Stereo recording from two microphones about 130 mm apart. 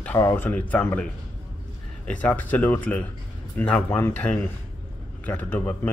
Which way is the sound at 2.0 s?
10° left (ahead or behind).